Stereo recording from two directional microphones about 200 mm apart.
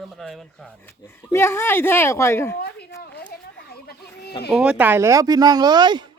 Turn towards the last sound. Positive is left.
turn(degrees=-20)  # may be behind; listen again after turning